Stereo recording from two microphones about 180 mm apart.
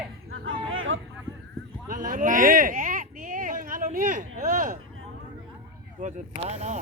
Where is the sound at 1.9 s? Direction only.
45° right (ahead or behind).